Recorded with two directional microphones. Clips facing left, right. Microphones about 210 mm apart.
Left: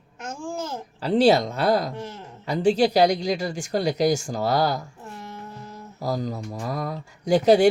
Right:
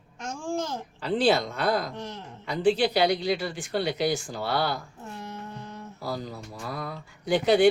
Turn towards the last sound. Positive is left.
turn(degrees=40)  # may be behind; listen again after turning